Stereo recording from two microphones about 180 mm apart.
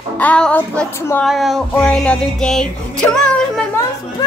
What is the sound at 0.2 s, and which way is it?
Child singing, 5° left (ahead or behind).